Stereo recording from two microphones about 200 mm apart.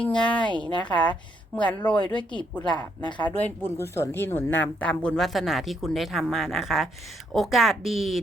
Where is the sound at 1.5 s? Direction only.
5° left (ahead or behind).